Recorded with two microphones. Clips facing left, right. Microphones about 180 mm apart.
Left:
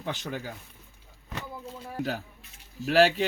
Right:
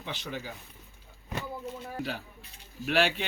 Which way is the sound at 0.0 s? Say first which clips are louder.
Left 4 dB; 45° left (ahead or behind).